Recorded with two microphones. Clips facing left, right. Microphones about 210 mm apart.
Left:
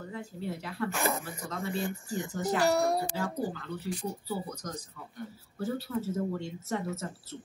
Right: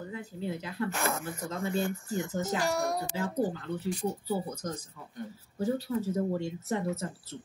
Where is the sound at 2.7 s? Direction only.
35° left (ahead or behind).